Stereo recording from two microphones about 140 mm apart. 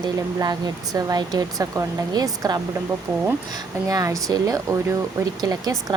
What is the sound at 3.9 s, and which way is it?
A woman's voice, 25° right (ahead or behind).